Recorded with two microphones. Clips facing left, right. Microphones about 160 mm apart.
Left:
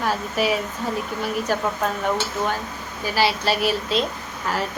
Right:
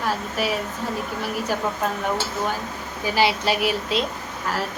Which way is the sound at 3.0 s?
20° right (ahead or behind).